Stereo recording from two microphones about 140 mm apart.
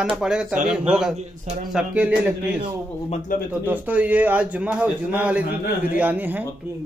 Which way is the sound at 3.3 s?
80° left.